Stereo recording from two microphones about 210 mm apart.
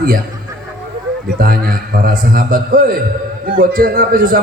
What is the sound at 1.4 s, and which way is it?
A man's voice, 45° right (ahead or behind).